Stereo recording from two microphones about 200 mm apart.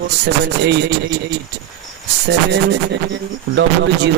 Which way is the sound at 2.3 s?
60° right (ahead or behind).